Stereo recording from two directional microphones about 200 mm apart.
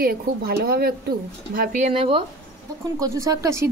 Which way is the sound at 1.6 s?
35° right (ahead or behind).